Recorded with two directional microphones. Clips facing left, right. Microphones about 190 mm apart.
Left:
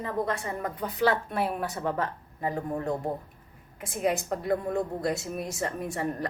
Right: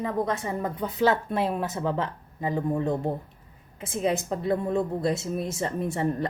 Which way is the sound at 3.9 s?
25° right (ahead or behind).